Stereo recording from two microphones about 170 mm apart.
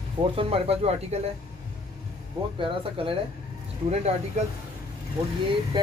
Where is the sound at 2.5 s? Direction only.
30° right (ahead or behind).